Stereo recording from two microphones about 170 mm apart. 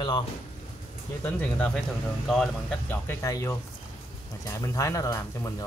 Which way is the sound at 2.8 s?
15° left (ahead or behind).